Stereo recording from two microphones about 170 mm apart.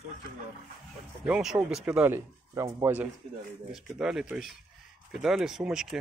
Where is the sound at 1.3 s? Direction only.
5° right (ahead or behind).